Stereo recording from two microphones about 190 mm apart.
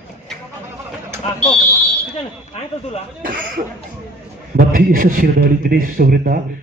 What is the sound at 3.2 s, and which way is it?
A man's voice, 50° right (ahead or behind).